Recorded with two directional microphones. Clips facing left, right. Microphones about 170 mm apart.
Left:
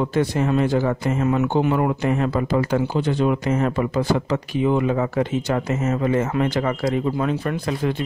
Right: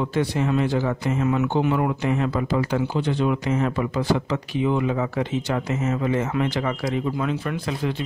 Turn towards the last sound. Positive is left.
turn(degrees=45)  # may be behind; listen again after turning